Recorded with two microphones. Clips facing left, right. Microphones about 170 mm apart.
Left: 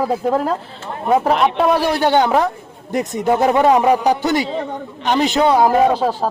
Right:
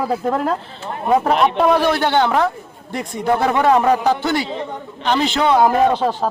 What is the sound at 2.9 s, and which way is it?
Speech, 45° left (ahead or behind).